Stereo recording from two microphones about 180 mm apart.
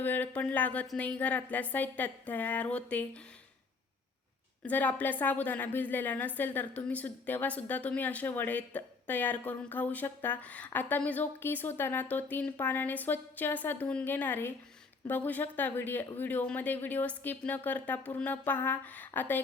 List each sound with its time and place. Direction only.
0.0 s a woman's voice: 10° left (ahead or behind)
4.6 s a woman's voice: 10° left (ahead or behind)